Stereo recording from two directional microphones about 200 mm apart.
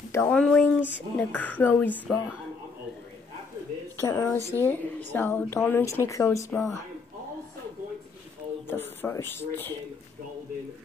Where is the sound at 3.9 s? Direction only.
15° left (ahead or behind).